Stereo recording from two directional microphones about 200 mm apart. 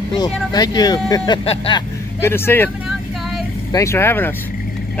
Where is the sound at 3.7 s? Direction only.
15° left (ahead or behind).